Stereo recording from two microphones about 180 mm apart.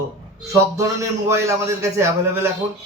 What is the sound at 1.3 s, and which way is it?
A man's voice, 15° right (ahead or behind).